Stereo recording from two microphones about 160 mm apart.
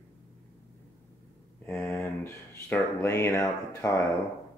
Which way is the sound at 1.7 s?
15° left (ahead or behind).